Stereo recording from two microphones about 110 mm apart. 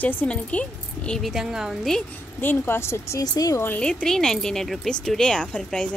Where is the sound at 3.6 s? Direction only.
10° left (ahead or behind).